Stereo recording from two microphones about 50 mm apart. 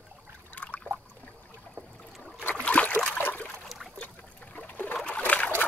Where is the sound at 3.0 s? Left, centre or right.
Left.